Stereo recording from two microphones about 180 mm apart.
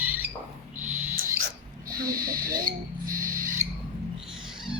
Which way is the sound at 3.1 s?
50° right (ahead or behind).